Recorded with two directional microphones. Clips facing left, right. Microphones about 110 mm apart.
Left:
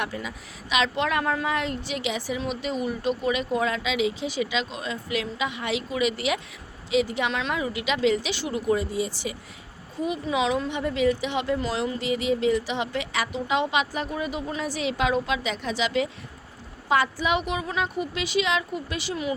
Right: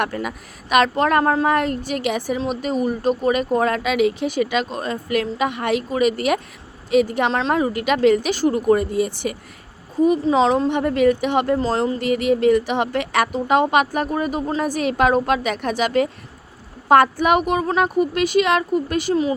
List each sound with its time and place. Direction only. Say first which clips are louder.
0.0 s speech: right 7 dB; 60° right (ahead or behind)
7.3 s speech: right 8 dB; 40° right (ahead or behind); by 9.3 s 55° right (ahead or behind)
10.0 s speech: right 10 dB; 40° right (ahead or behind)
10.7 s speech: right 7 dB; 55° right (ahead or behind)
11.6 s speech: right 7 dB; 40° right (ahead or behind)
19.1 s speech: right 8 dB; 35° right (ahead or behind)